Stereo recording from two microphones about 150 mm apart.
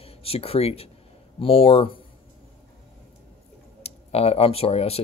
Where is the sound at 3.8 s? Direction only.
45° left (ahead or behind).